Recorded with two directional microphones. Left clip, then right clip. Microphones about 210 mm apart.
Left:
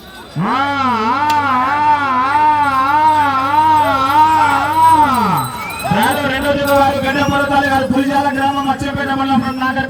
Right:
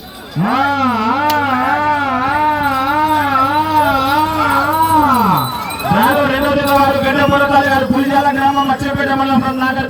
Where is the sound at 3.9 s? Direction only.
35° left (ahead or behind).